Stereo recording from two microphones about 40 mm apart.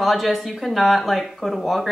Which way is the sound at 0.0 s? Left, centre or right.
Centre.